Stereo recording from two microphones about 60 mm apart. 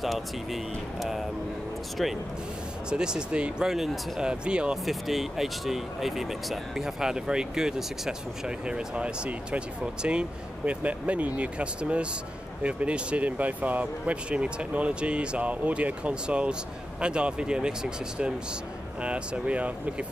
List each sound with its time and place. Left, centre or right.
0.0 s speech: centre
2.9 s speech: centre
4.8 s speech: centre; by 20.1 s right